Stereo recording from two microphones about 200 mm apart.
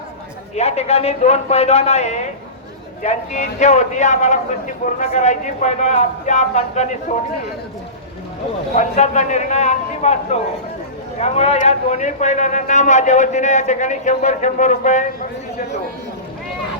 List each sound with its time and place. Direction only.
0.5 s a man's voice: 30° left (ahead or behind)
8.7 s a man's voice: 35° left (ahead or behind)